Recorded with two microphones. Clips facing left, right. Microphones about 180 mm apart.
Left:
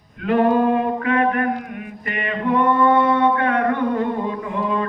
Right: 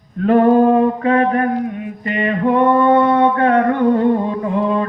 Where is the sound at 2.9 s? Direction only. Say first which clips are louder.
Right 4 dB; 40° right (ahead or behind).